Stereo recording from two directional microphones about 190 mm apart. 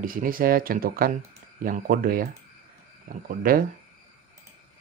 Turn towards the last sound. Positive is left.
turn(degrees=-50)  # may be behind; listen again after turning